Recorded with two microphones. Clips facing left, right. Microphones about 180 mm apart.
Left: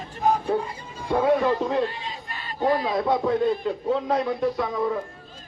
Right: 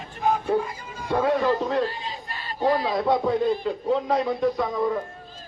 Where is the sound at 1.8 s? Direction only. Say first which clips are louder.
Even; 35° right (ahead or behind).